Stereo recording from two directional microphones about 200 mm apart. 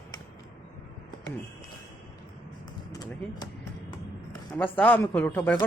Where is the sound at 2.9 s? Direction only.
20° left (ahead or behind).